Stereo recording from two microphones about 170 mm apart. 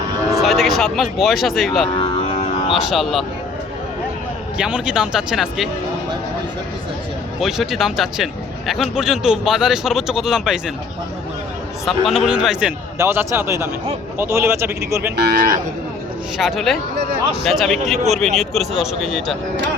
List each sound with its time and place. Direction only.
0.4 s speech: centre (ahead or behind)
2.0 s music: 30° left (ahead or behind)
2.7 s speech: centre (ahead or behind)
4.5 s speech: 5° right (ahead or behind)
7.3 s speech: centre (ahead or behind)
11.9 s a man's voice: centre (ahead or behind); by 15.1 s 15° right (ahead or behind)
15.1 s speech: 70° right (ahead or behind)
16.4 s speech: centre (ahead or behind)